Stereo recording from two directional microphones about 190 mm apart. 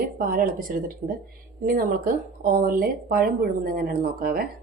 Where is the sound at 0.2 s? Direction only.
50° right (ahead or behind).